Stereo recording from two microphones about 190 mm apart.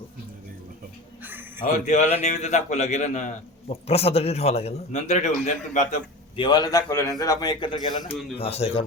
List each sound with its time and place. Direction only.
1.2 s a sound: 10° right (ahead or behind)
1.6 s a man's voice: 40° left (ahead or behind)
6.3 s a man's voice: 25° left (ahead or behind)